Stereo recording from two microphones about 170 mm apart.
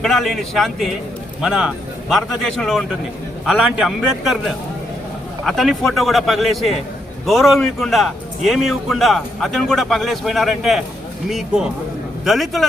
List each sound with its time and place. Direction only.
0.0 s a man's voice: centre (ahead or behind)